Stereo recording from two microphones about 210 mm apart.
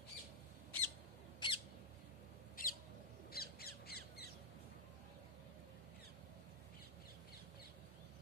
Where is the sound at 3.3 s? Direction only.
45° left (ahead or behind).